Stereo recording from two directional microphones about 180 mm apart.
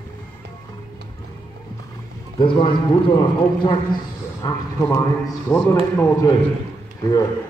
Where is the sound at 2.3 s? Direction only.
25° left (ahead or behind).